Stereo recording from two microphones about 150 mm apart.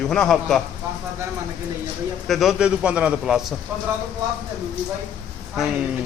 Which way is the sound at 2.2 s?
Centre (ahead or behind).